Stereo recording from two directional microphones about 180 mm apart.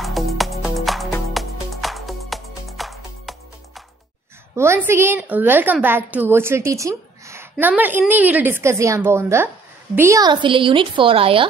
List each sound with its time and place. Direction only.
0.0 s music: centre (ahead or behind)
4.6 s a woman's voice: 15° right (ahead or behind); by 11.4 s 30° right (ahead or behind)